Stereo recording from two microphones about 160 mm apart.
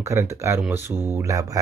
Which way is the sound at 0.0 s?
15° right (ahead or behind).